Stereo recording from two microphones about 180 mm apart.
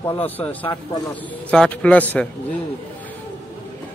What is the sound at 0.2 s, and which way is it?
Speech, 10° left (ahead or behind).